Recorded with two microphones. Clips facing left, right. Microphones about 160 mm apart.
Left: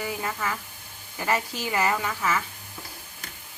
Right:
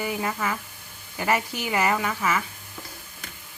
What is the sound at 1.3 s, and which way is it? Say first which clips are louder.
A woman's voice: right 2 dB; 15° right (ahead or behind).